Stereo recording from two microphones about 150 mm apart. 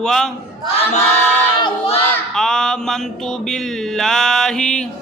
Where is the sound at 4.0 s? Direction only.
5° left (ahead or behind).